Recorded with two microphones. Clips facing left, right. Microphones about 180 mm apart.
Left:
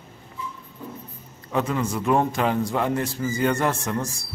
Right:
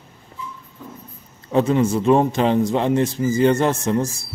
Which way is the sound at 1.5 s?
30° right (ahead or behind).